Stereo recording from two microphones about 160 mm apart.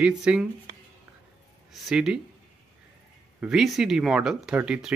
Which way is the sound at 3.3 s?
5° right (ahead or behind).